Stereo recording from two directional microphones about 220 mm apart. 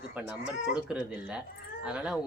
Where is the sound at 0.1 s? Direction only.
5° right (ahead or behind).